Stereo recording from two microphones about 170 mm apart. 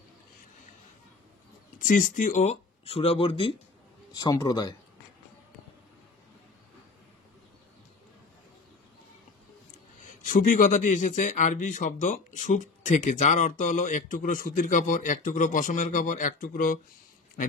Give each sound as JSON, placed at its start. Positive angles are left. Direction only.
{"t": 1.8, "sound": "a man's voice", "side_deg": 50}
{"t": 10.0, "sound": "a man's voice", "side_deg": 50}